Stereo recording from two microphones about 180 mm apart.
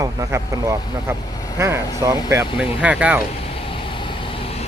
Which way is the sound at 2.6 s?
5° right (ahead or behind).